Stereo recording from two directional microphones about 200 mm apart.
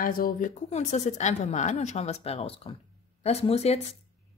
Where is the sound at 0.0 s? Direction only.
45° left (ahead or behind).